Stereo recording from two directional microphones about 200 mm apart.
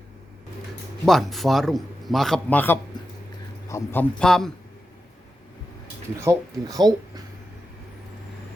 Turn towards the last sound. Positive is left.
turn(degrees=-20)  # may be behind; listen again after turning